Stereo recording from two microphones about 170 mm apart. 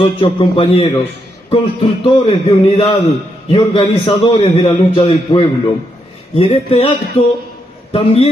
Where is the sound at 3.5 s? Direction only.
30° left (ahead or behind).